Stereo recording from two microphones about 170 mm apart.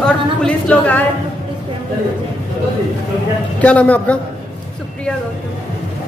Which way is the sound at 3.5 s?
10° left (ahead or behind).